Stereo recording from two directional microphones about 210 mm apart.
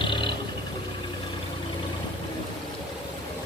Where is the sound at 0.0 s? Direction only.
25° left (ahead or behind).